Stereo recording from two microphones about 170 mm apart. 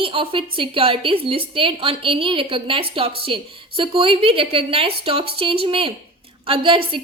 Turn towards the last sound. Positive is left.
turn(degrees=-30)  # may be behind; listen again after turning